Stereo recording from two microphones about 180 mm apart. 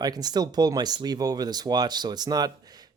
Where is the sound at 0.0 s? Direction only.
20° right (ahead or behind).